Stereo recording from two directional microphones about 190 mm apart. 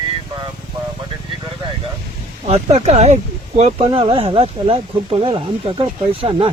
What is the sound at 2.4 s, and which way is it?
Speech, 35° right (ahead or behind).